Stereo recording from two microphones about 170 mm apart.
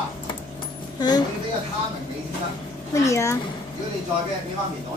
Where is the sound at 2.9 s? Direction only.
15° left (ahead or behind).